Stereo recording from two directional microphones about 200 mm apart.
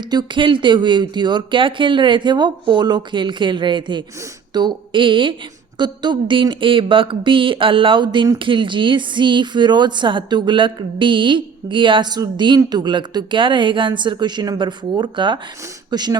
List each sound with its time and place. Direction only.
0.1 s speech: 25° right (ahead or behind)